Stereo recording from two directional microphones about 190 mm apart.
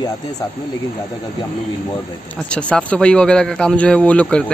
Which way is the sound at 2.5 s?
5° left (ahead or behind).